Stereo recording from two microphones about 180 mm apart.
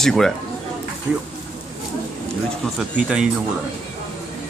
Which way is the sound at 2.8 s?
5° right (ahead or behind).